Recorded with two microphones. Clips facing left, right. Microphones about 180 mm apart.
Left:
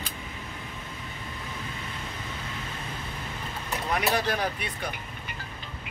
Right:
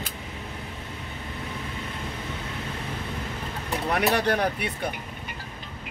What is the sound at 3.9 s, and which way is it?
Speech, 65° right (ahead or behind).